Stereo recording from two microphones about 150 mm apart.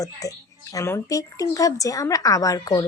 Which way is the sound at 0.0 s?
20° left (ahead or behind).